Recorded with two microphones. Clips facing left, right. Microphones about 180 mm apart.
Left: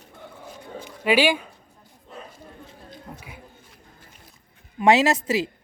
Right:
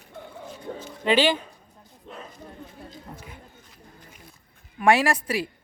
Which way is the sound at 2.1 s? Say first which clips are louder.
Even; 70° right (ahead or behind).